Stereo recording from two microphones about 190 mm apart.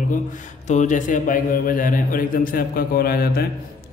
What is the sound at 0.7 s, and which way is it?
A man's voice, 40° left (ahead or behind).